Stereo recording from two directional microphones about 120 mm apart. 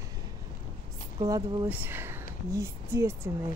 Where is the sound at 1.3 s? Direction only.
30° right (ahead or behind).